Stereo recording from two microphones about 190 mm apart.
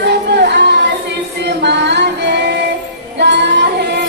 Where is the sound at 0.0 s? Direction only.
60° right (ahead or behind).